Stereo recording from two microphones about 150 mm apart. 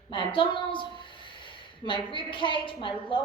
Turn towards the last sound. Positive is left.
turn(degrees=35)  # may be behind; listen again after turning